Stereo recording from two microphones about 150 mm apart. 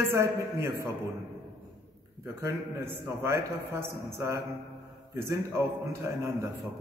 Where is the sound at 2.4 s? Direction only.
20° right (ahead or behind).